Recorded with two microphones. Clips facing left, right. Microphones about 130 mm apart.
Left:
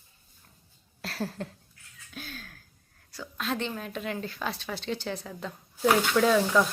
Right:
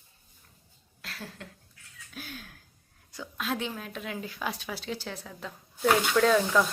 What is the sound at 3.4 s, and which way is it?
Speech, 5° right (ahead or behind).